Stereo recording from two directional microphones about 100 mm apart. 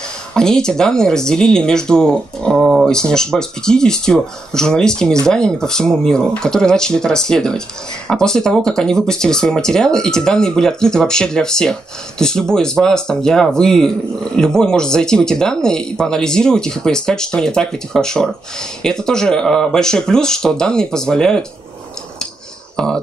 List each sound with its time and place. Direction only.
0.3 s speech: 5° left (ahead or behind)
2.5 s a sound: 5° right (ahead or behind)
2.9 s speech: 5° left (ahead or behind)
22.8 s speech: 5° left (ahead or behind)